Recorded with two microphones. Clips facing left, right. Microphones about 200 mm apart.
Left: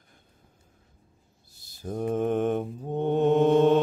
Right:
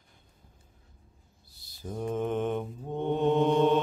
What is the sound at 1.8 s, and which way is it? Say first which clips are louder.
Mantra: left 4 dB; 45° left (ahead or behind).